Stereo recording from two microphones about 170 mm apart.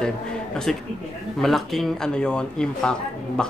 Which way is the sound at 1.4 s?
Centre (ahead or behind).